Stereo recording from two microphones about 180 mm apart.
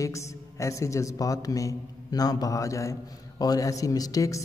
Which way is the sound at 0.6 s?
15° left (ahead or behind).